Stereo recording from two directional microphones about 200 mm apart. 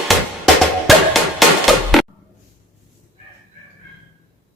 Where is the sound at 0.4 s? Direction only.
Centre (ahead or behind).